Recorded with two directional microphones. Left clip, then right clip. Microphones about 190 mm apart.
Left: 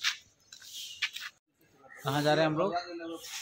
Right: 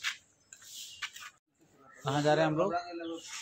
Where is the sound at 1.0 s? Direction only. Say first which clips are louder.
Left 8 dB; centre (ahead or behind).